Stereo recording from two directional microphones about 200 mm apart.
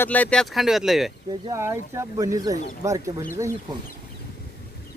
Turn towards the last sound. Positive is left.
turn(degrees=-15)  # may be behind; listen again after turning